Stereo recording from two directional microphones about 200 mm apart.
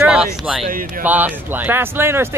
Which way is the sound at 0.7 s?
45° right (ahead or behind).